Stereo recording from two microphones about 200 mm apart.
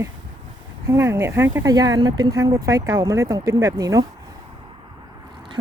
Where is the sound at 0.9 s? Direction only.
15° right (ahead or behind).